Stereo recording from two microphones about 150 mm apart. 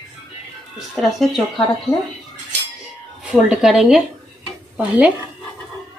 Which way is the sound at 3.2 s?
5° right (ahead or behind).